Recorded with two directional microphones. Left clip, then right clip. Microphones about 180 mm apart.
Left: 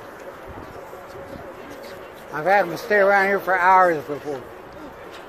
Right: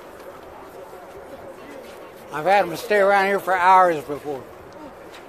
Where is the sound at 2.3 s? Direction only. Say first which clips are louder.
Even; 15° right (ahead or behind).